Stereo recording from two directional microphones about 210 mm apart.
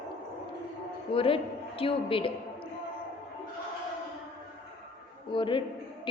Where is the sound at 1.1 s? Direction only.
25° left (ahead or behind).